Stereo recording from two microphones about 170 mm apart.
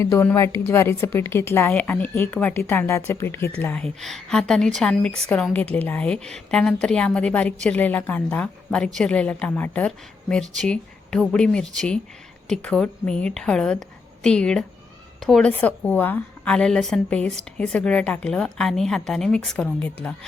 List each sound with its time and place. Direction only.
0.0 s a woman's voice: 15° left (ahead or behind)